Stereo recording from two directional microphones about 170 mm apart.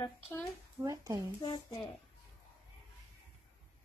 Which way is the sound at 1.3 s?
25° left (ahead or behind).